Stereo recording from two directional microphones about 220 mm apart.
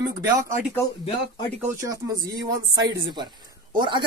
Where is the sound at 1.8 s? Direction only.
15° right (ahead or behind).